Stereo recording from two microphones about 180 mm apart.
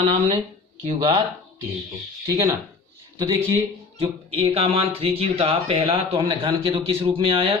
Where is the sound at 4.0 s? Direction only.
35° right (ahead or behind).